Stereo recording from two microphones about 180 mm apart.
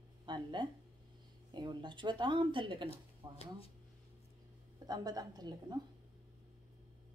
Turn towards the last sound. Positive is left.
turn(degrees=-20)  # may be behind; listen again after turning